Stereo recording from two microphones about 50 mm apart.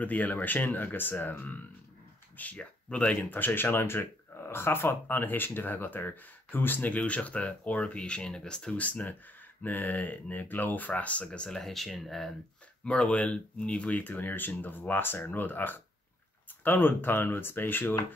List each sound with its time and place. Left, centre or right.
0.0 s speech: left
2.3 s speech: left
3.3 s speech: left
5.0 s speech: left
6.9 s speech: left
8.7 s speech: left
11.2 s speech: centre
11.6 s speech: centre
12.8 s speech: left